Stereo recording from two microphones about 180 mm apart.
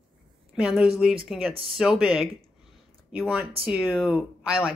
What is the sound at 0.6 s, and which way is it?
Speech, 5° right (ahead or behind).